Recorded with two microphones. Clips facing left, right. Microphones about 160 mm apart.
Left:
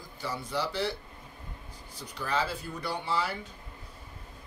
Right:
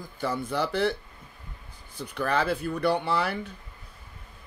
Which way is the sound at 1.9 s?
60° right (ahead or behind).